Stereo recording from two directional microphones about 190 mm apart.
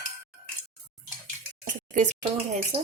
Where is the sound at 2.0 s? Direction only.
35° right (ahead or behind).